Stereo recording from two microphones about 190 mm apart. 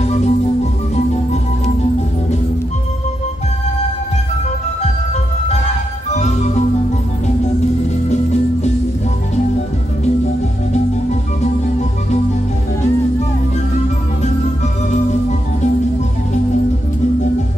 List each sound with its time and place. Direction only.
0.0 s music: 35° left (ahead or behind)
6.1 s music: 35° left (ahead or behind)
8.1 s music: 35° left (ahead or behind)